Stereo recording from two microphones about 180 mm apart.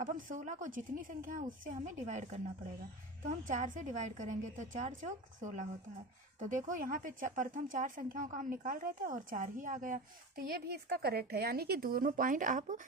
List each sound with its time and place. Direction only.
0.0 s speech: 45° right (ahead or behind)